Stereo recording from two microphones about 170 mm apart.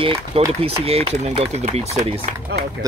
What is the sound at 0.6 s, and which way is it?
Speech, 35° right (ahead or behind).